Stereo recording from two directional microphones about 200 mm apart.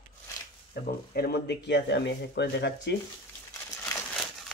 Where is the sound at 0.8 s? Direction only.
50° left (ahead or behind).